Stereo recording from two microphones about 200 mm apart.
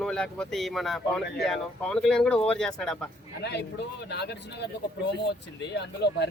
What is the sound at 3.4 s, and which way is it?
Speech, 55° left (ahead or behind).